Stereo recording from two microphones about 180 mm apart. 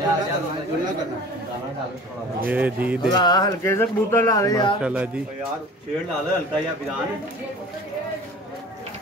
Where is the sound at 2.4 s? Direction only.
10° right (ahead or behind).